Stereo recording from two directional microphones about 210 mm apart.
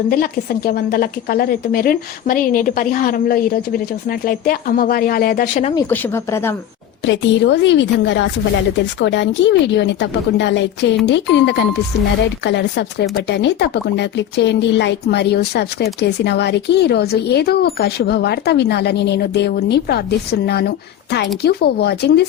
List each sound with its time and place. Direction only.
0.1 s speech: 45° left (ahead or behind)
5.9 s speech: 10° left (ahead or behind)
7.0 s speech: 60° left (ahead or behind)